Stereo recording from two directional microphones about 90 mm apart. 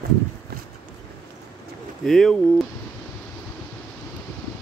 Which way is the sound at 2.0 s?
5° left (ahead or behind).